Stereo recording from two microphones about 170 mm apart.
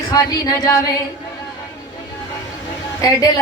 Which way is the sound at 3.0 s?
20° left (ahead or behind).